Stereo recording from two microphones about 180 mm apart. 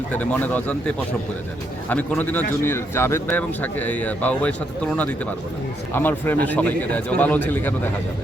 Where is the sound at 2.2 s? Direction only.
10° left (ahead or behind).